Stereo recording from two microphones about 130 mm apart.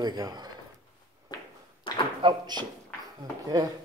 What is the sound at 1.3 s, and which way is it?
Whip, 30° left (ahead or behind).